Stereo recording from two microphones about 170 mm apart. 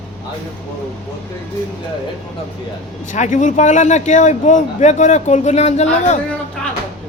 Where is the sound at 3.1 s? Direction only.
45° left (ahead or behind).